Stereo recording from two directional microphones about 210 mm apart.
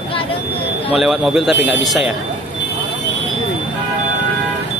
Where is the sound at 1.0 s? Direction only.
Centre (ahead or behind).